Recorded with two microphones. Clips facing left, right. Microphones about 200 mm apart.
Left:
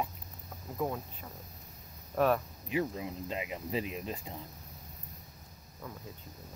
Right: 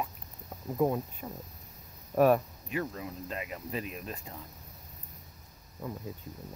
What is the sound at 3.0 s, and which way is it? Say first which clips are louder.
Speech: left 1 dB; 20° left (ahead or behind).